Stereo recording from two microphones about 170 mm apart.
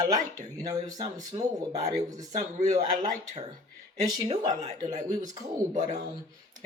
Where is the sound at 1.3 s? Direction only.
35° right (ahead or behind).